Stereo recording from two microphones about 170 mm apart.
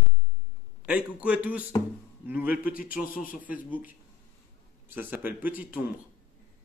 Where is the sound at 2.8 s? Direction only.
55° left (ahead or behind).